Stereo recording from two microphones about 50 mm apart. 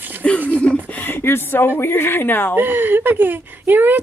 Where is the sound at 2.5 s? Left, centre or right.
Right.